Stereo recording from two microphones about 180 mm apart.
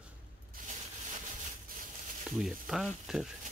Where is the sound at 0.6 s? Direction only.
50° right (ahead or behind).